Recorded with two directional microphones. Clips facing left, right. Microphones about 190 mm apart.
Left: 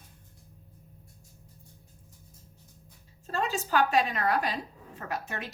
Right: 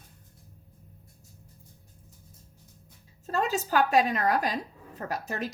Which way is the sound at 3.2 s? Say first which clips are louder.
Right 3 dB; 40° right (ahead or behind).